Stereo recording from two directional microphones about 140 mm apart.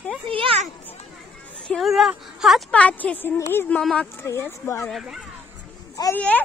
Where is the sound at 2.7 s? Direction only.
10° left (ahead or behind).